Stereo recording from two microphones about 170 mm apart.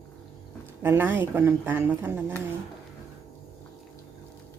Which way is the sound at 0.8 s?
10° right (ahead or behind).